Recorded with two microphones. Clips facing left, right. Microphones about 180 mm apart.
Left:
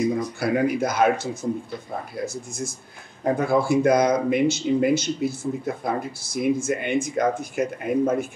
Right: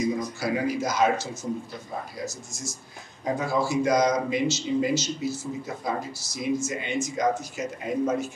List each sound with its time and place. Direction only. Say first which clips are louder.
0.4 s speech: left 7 dB; 60° left (ahead or behind)